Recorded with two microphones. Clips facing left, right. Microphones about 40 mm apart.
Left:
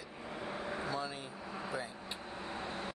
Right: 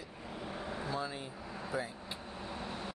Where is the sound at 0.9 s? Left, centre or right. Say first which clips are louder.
Right 4 dB; centre.